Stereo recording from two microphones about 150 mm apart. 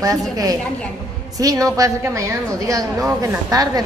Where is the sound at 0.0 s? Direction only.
25° right (ahead or behind).